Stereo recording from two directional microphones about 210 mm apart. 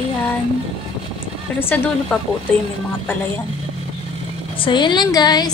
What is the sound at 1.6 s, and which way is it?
Speech, 10° left (ahead or behind).